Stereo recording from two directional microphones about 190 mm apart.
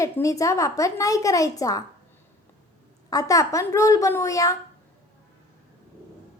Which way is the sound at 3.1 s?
20° left (ahead or behind).